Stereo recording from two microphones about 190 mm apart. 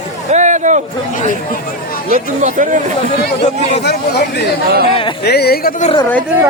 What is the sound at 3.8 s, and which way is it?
A woman's voice, 60° left (ahead or behind).